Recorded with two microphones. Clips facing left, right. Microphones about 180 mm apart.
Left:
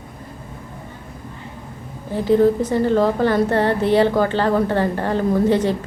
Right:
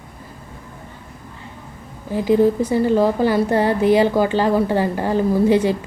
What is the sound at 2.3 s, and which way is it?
A woman's voice, 10° right (ahead or behind).